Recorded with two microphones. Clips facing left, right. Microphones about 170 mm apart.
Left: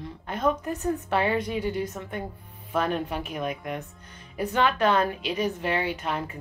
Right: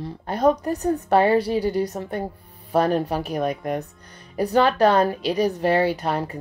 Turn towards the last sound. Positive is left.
turn(degrees=-35)  # may be behind; listen again after turning